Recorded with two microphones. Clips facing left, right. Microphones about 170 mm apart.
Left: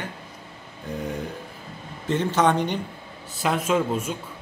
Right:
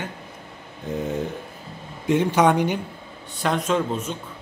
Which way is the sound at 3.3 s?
5° left (ahead or behind).